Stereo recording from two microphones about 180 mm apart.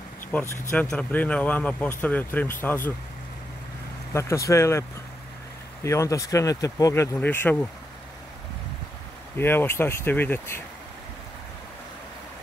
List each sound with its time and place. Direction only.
0.3 s speech: 10° left (ahead or behind)
4.1 s speech: 15° left (ahead or behind)
5.9 s speech: 15° left (ahead or behind)
9.4 s speech: 10° left (ahead or behind)